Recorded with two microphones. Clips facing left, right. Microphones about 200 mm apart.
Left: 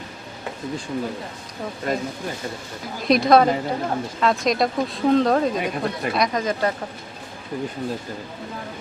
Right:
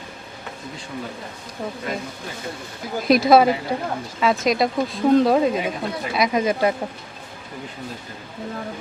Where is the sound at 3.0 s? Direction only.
Centre (ahead or behind).